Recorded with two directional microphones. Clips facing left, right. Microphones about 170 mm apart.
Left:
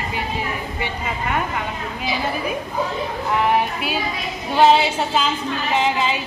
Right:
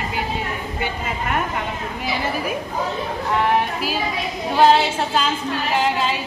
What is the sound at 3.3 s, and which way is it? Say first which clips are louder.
A woman's voice: even; centre (ahead or behind).